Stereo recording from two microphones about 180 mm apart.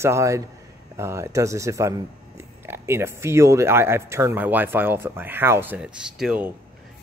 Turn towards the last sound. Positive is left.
turn(degrees=-5)  # may be behind; listen again after turning